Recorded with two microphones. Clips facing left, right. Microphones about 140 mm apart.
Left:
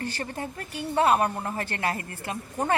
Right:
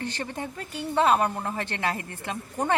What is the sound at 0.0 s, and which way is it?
Speech, 40° left (ahead or behind).